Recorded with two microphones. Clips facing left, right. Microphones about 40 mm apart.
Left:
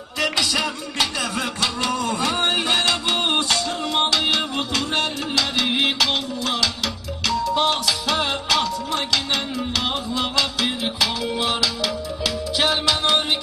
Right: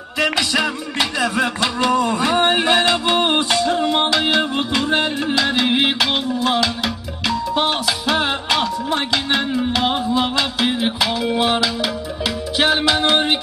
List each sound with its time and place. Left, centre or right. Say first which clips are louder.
0.2 s music: right 4 dB; centre